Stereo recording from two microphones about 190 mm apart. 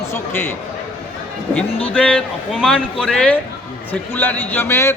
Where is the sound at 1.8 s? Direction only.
5° left (ahead or behind).